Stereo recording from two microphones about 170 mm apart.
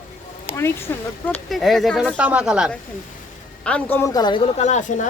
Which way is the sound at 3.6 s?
10° left (ahead or behind).